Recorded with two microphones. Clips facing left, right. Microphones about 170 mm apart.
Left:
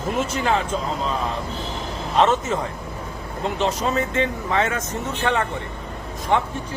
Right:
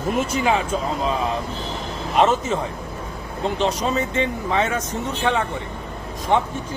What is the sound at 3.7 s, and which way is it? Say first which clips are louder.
Speech: even; 15° right (ahead or behind).